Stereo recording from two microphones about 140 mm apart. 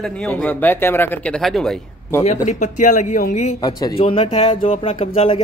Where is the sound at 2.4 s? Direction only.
60° left (ahead or behind).